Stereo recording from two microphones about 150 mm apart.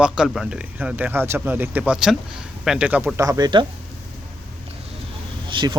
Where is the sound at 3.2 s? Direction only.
25° right (ahead or behind).